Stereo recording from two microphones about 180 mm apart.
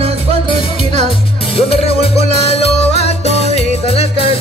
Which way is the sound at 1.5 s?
35° left (ahead or behind).